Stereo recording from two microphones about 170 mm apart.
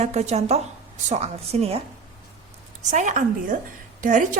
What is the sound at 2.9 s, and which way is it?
A woman's voice, 45° right (ahead or behind).